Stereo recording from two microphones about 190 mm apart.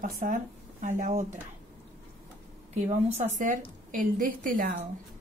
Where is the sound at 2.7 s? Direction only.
40° right (ahead or behind).